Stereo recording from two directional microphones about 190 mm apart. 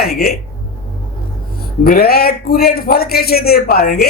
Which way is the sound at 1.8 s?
55° left (ahead or behind).